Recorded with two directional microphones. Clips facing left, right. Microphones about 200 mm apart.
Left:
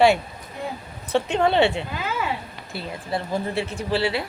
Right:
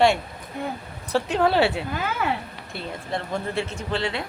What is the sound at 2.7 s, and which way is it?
Speech, 5° left (ahead or behind).